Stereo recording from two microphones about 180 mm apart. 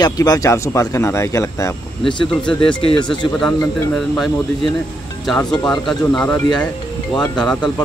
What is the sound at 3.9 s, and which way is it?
Speech, centre (ahead or behind).